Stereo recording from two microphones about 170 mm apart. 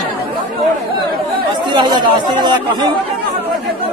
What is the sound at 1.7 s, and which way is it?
Speech, 25° right (ahead or behind).